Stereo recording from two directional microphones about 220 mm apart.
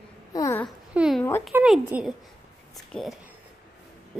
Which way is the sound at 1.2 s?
10° left (ahead or behind).